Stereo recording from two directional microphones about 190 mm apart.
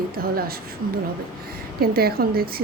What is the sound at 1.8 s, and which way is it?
Speech, 55° right (ahead or behind).